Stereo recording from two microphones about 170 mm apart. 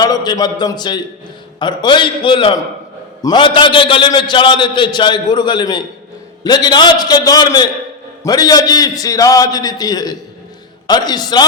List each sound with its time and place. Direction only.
0.0 s a man's voice: 25° left (ahead or behind)